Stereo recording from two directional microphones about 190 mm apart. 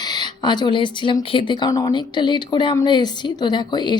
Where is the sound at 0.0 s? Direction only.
20° left (ahead or behind).